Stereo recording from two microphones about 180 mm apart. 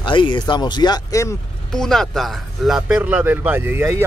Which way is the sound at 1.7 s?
5° left (ahead or behind).